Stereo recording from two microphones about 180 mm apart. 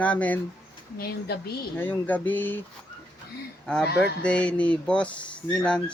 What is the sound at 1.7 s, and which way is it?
Speech, 10° left (ahead or behind).